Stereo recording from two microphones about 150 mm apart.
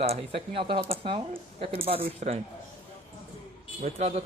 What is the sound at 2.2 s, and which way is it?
Speech, 55° right (ahead or behind).